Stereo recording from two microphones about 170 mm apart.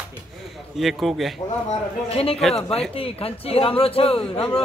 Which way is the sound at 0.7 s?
Centre (ahead or behind).